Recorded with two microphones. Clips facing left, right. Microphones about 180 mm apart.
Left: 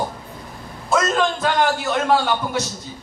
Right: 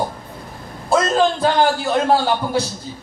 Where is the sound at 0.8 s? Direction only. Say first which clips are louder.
Right 3 dB; 30° right (ahead or behind).